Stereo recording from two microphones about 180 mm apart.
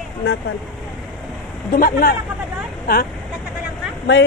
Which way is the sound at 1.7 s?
55° left (ahead or behind).